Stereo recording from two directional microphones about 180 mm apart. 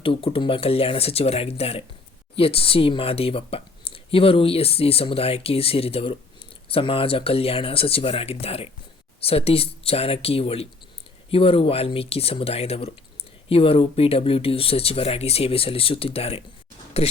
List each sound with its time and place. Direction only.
0.0 s speech: 30° left (ahead or behind)